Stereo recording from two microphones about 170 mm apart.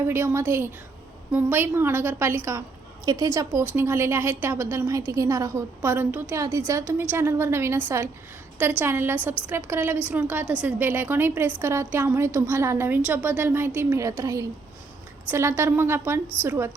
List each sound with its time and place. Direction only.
0.1 s a woman's voice: 15° right (ahead or behind)